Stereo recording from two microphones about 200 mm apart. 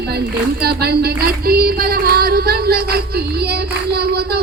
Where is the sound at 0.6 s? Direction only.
50° right (ahead or behind).